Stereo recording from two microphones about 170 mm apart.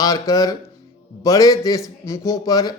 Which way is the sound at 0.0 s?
20° left (ahead or behind).